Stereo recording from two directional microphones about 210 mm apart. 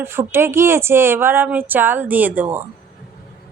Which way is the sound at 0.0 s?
10° right (ahead or behind).